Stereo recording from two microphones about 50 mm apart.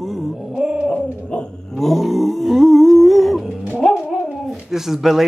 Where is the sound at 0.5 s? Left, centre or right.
Centre.